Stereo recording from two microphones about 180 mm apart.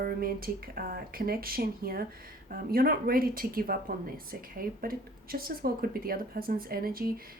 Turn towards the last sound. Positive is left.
turn(degrees=-55)  # may be behind; listen again after turning